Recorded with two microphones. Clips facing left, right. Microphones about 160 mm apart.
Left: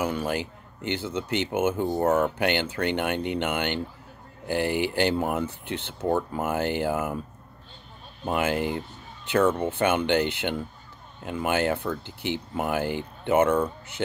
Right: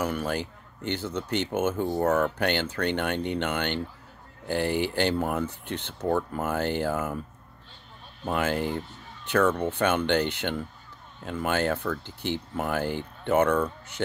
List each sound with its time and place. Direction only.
0.0 s speech: 10° left (ahead or behind)
8.3 s speech: 10° left (ahead or behind)